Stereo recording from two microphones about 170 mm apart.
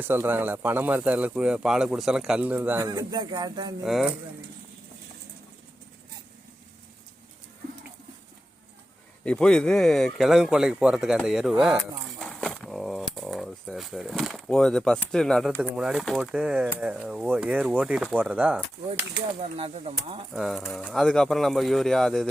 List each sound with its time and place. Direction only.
0.0 s speech: 10° right (ahead or behind)
3.1 s speech: 25° right (ahead or behind)
3.8 s speech: centre (ahead or behind)
9.2 s speech: 5° left (ahead or behind)
19.5 s speech: 35° right (ahead or behind)
20.3 s speech: centre (ahead or behind)